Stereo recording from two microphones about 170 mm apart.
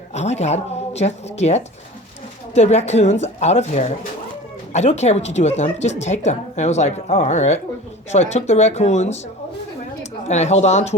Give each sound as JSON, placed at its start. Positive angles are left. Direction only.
{"t": 0.1, "sound": "a woman's voice", "side_deg": 40}
{"t": 10.2, "sound": "a woman's voice", "side_deg": 40}